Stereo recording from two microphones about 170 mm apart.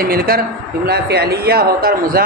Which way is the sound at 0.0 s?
60° right (ahead or behind).